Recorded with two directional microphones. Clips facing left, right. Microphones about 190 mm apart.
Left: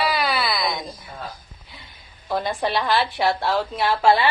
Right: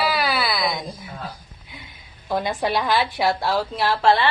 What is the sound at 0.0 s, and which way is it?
Wail, centre (ahead or behind).